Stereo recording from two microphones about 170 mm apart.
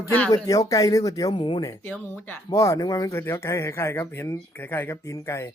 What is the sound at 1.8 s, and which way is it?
Speech, 10° left (ahead or behind).